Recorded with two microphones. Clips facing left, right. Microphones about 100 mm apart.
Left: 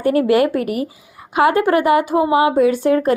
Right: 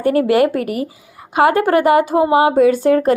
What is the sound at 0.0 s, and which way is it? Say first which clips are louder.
A woman's voice: right 1 dB; 35° right (ahead or behind).